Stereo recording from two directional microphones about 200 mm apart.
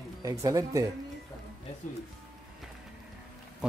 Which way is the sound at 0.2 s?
15° right (ahead or behind).